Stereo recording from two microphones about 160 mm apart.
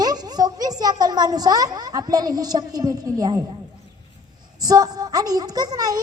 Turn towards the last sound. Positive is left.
turn(degrees=-25)  # may be behind; listen again after turning